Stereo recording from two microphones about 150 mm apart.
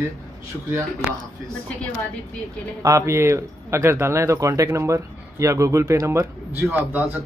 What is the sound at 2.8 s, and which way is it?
Speech, 20° right (ahead or behind).